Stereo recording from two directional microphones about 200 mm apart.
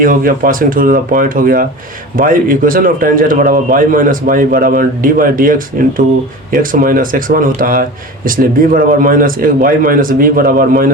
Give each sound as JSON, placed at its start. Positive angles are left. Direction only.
{"t": 0.0, "sound": "speech", "side_deg": -45}